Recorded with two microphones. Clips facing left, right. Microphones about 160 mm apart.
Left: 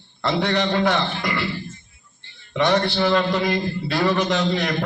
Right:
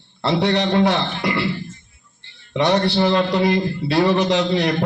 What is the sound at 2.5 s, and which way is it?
A man's voice, 30° right (ahead or behind).